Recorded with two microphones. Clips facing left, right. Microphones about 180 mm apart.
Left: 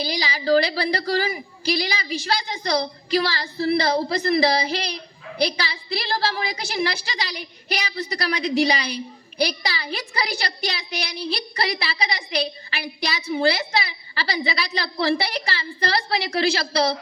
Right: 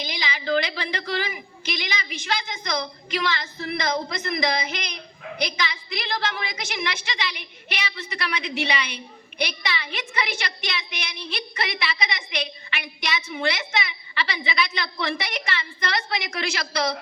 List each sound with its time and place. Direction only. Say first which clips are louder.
0.0 s a woman's voice: left 5 dB; 35° left (ahead or behind)